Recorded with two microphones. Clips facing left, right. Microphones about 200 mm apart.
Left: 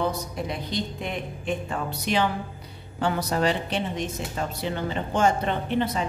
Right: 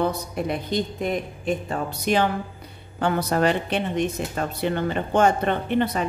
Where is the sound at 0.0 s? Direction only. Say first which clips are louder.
Right 3 dB; 55° right (ahead or behind).